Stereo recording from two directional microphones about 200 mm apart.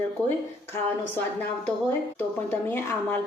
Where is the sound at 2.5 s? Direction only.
10° left (ahead or behind).